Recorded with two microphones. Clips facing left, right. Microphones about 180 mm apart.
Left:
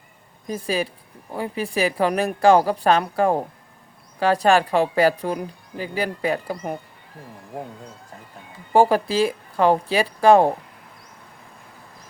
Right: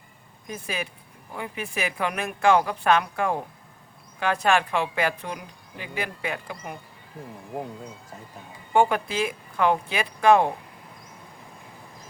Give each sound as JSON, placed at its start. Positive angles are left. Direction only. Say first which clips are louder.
{"t": 0.4, "sound": "a woman's voice", "louder": "left 8 dB", "side_deg": 35}
{"t": 8.7, "sound": "a woman's voice", "louder": "left 5 dB", "side_deg": 35}